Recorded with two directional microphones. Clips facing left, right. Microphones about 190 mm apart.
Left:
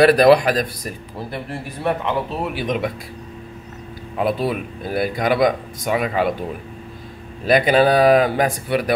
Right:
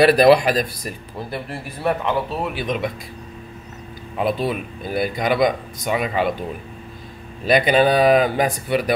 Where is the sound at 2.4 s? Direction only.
10° left (ahead or behind).